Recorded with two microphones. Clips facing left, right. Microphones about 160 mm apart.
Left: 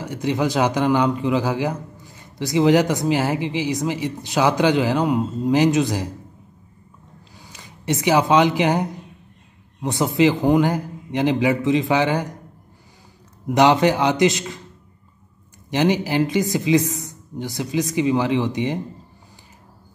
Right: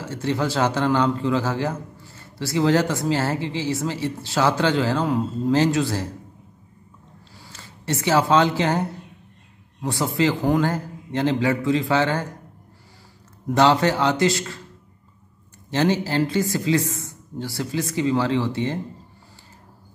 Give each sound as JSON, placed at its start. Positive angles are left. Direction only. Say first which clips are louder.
{"t": 0.0, "sound": "a man's voice", "louder": "left 2 dB", "side_deg": 15}
{"t": 7.3, "sound": "a man's voice", "louder": "even", "side_deg": 15}
{"t": 13.5, "sound": "a man's voice", "louder": "left 2 dB", "side_deg": 15}
{"t": 15.7, "sound": "a man's voice", "louder": "left 2 dB", "side_deg": 15}